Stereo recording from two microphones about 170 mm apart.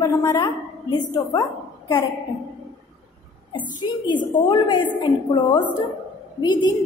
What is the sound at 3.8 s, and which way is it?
A woman's voice, 25° left (ahead or behind).